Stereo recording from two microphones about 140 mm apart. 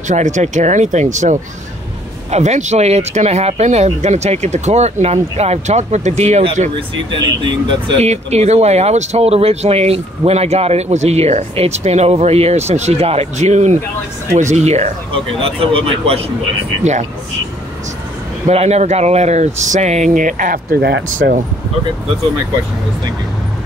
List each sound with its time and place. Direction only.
0.1 s speech: 60° right (ahead or behind)
7.1 s speech: 35° right (ahead or behind)
8.0 s speech: 50° right (ahead or behind)
18.5 s speech: 50° right (ahead or behind); by 20.8 s 80° right